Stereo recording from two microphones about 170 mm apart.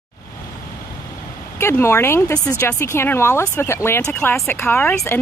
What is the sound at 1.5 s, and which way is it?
Speech, 15° left (ahead or behind).